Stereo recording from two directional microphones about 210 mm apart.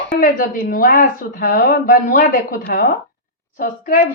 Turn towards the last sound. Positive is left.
turn(degrees=40)  # may be behind; listen again after turning